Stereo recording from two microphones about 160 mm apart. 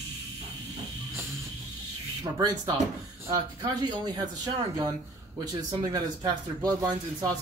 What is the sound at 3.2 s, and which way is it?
Speech, 25° right (ahead or behind).